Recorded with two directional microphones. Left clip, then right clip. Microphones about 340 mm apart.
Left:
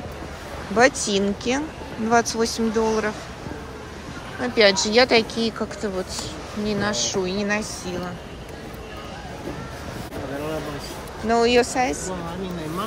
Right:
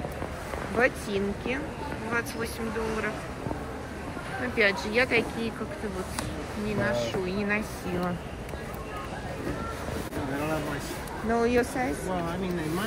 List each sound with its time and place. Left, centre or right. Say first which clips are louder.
0.7 s speech: left 8 dB; centre
4.6 s speech: left 8 dB; centre
6.8 s speech: left 3 dB; centre
11.2 s speech: left 7 dB; centre